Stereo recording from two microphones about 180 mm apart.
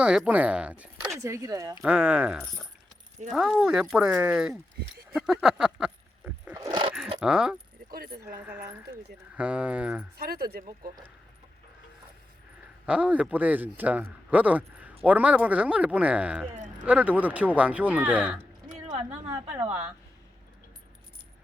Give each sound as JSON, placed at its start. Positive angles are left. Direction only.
{"t": 0.0, "sound": "speech", "side_deg": -5}
{"t": 1.2, "sound": "speech", "side_deg": -15}
{"t": 1.8, "sound": "speech", "side_deg": -5}
{"t": 5.1, "sound": "a sound", "side_deg": -5}
{"t": 6.5, "sound": "dog", "side_deg": -20}
{"t": 7.2, "sound": "speech", "side_deg": -5}
{"t": 7.9, "sound": "keys jangling", "side_deg": -55}
{"t": 8.4, "sound": "speech", "side_deg": -10}
{"t": 10.2, "sound": "speech", "side_deg": -60}
{"t": 12.8, "sound": "speech", "side_deg": -5}